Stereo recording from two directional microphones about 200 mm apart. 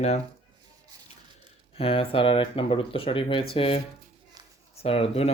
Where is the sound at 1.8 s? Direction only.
30° left (ahead or behind).